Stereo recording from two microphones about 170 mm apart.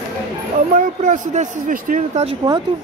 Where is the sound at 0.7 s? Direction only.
50° right (ahead or behind).